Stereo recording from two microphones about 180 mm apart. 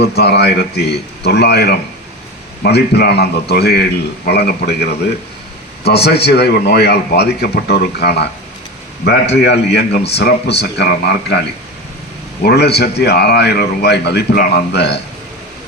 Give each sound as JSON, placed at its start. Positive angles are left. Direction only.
{"t": 0.0, "sound": "a man's voice", "side_deg": 65}
{"t": 9.4, "sound": "a man's voice", "side_deg": 65}